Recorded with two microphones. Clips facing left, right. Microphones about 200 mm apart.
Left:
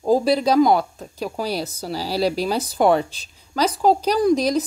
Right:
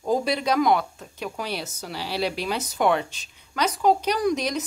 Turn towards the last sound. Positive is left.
turn(degrees=35)  # may be behind; listen again after turning